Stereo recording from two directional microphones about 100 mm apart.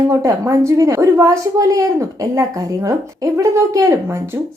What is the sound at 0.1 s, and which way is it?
A woman's voice, 30° right (ahead or behind).